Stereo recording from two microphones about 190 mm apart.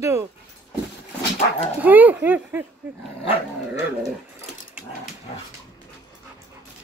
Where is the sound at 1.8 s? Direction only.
10° right (ahead or behind).